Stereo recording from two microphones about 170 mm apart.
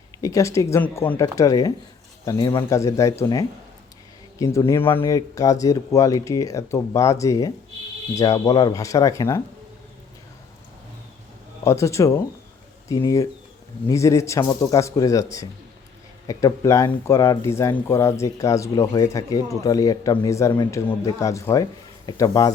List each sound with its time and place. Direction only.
0.2 s speech: 20° left (ahead or behind)
4.7 s speech: 10° left (ahead or behind)
11.6 s speech: 15° left (ahead or behind)